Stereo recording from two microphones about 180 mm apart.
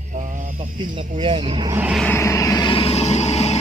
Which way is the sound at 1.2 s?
30° right (ahead or behind).